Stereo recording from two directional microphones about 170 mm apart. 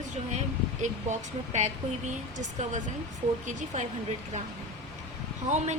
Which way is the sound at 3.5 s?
45° right (ahead or behind).